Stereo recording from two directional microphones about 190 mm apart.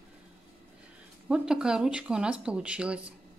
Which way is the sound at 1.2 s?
5° right (ahead or behind).